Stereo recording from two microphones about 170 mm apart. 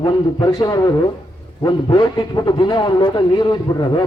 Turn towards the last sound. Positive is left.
turn(degrees=25)  # may be behind; listen again after turning